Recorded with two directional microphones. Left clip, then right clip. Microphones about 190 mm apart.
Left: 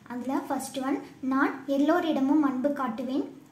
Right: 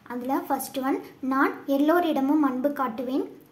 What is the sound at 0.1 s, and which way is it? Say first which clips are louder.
A child's voice: right 4 dB; 15° right (ahead or behind).